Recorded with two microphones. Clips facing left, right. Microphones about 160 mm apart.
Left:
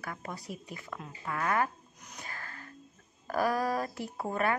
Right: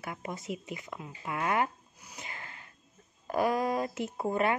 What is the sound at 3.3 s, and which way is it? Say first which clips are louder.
Speech: right 1 dB; 20° right (ahead or behind).